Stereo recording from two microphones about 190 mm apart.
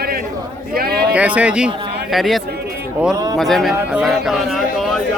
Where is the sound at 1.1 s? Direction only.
5° right (ahead or behind).